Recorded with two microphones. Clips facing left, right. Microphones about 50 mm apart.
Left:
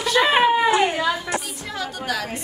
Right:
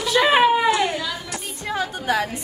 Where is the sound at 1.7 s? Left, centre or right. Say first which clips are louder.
Right 4 dB; right.